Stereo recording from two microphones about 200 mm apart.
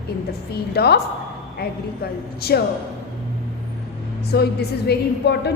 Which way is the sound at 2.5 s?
55° left (ahead or behind).